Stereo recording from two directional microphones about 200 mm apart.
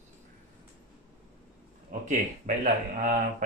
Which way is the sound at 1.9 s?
40° right (ahead or behind).